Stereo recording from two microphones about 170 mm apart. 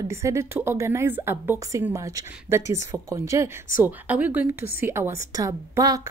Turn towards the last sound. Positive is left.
turn(degrees=-20)  # may be behind; listen again after turning